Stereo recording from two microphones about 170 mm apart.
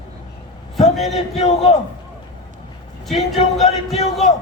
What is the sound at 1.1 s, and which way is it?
Speech, 35° left (ahead or behind).